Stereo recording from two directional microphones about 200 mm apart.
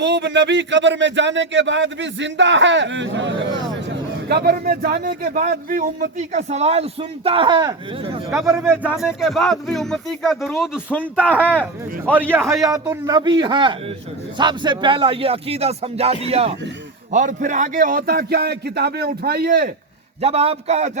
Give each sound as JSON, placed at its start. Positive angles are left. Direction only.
{"t": 0.0, "sound": "speech", "side_deg": -60}
{"t": 8.4, "sound": "a man's voice", "side_deg": -15}
{"t": 20.2, "sound": "a man's voice", "side_deg": -30}